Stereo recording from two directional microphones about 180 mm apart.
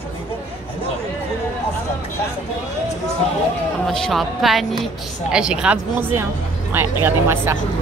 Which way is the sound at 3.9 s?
Centre (ahead or behind).